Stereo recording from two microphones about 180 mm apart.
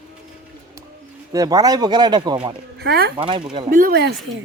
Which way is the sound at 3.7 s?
50° right (ahead or behind).